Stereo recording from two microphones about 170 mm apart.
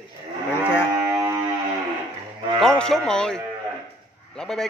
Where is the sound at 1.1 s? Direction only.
20° right (ahead or behind).